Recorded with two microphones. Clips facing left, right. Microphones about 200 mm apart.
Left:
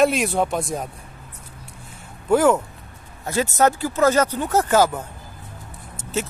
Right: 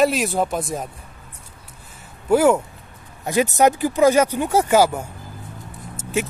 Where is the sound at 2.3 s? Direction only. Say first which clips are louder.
Right 1 dB; 10° right (ahead or behind).